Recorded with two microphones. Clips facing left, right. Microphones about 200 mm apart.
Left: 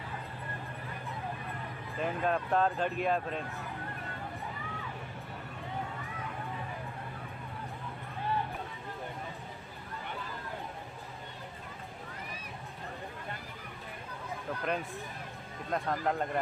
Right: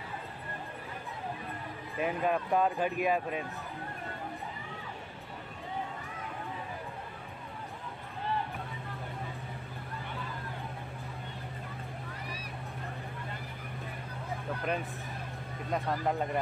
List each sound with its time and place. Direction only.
2.0 s speech: 5° right (ahead or behind)
15.7 s speech: 5° right (ahead or behind)